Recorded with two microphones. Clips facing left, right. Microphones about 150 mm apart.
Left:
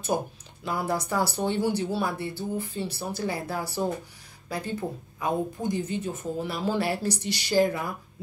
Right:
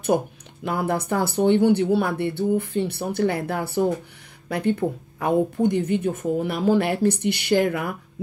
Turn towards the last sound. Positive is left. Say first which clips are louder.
# right 3 dB
turn(degrees=-65)  # may be behind; listen again after turning